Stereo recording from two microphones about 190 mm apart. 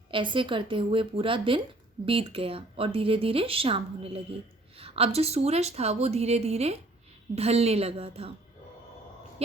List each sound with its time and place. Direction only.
0.1 s a woman's voice: 25° right (ahead or behind)